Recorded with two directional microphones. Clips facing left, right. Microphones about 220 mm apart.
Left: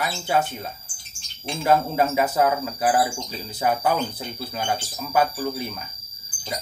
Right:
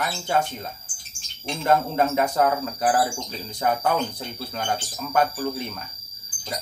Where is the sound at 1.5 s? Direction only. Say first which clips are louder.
Left 1 dB; 5° left (ahead or behind).